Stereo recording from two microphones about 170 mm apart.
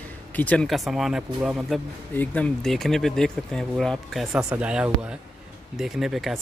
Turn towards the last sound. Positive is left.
turn(degrees=0)  # may be behind; listen again after turning